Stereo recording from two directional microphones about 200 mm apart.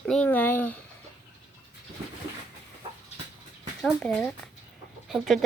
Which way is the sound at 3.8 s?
5° left (ahead or behind).